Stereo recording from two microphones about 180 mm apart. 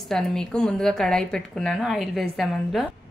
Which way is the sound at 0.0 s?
Centre (ahead or behind).